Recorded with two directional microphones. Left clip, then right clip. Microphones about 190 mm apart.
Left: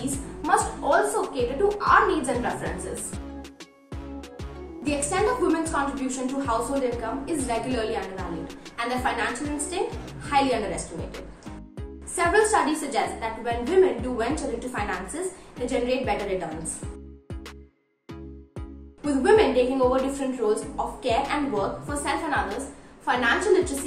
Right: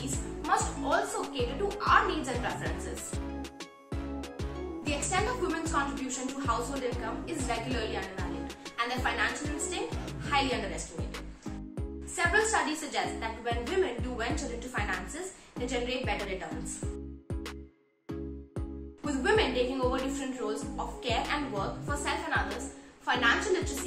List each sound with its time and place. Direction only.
0.0 s music: centre (ahead or behind)
4.8 s a woman's voice: centre (ahead or behind)
19.0 s a woman's voice: centre (ahead or behind)